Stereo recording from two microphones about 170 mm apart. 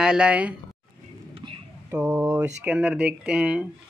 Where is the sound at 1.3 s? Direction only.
30° right (ahead or behind).